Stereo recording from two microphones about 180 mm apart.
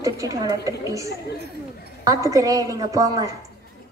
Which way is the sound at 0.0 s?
20° right (ahead or behind).